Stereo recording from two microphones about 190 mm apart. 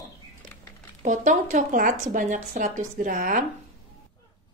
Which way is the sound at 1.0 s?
40° right (ahead or behind).